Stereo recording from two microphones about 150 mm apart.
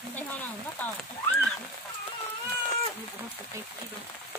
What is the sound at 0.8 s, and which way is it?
Speech, 10° left (ahead or behind).